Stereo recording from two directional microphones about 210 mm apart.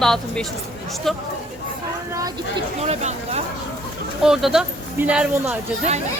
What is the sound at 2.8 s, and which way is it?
Speech, 30° right (ahead or behind).